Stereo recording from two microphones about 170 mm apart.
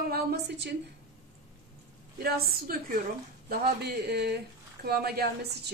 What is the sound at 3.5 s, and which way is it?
A woman's voice, 70° right (ahead or behind).